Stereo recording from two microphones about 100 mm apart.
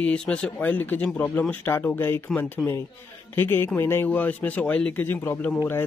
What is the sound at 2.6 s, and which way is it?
Speech, centre (ahead or behind).